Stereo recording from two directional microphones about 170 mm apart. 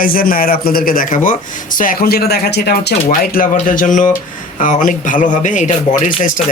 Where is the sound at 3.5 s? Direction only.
50° left (ahead or behind).